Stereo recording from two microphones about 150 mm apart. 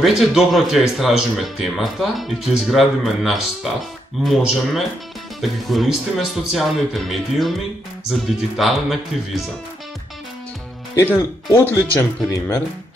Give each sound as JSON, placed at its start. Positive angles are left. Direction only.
{"t": 0.0, "sound": "speech", "side_deg": 0}
{"t": 11.0, "sound": "speech", "side_deg": 15}